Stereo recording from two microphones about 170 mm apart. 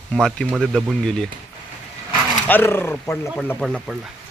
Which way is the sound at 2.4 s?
10° left (ahead or behind).